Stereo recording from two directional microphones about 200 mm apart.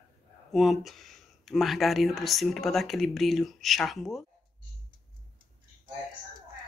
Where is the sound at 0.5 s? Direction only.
Centre (ahead or behind).